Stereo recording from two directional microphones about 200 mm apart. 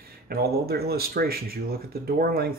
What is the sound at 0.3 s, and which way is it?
Speech, 50° right (ahead or behind).